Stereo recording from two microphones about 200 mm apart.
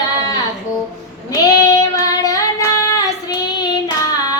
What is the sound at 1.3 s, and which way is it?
Child singing, 20° left (ahead or behind).